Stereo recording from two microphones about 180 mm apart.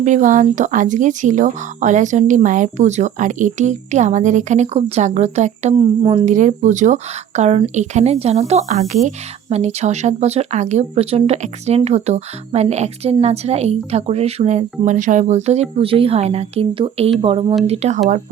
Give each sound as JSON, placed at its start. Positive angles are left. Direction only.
{"t": 0.0, "sound": "speech", "side_deg": -45}
{"t": 6.0, "sound": "speech", "side_deg": -30}
{"t": 6.2, "sound": "a woman's voice", "side_deg": -45}